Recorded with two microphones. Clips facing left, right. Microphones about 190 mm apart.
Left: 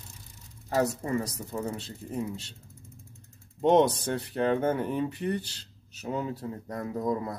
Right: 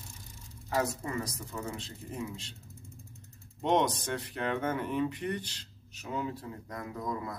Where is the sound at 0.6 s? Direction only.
35° left (ahead or behind).